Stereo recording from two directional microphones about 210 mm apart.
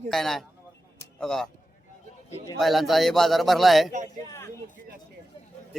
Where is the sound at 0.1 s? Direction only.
Centre (ahead or behind).